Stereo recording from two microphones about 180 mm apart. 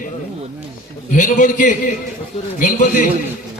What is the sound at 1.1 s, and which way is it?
A man's voice, 45° left (ahead or behind).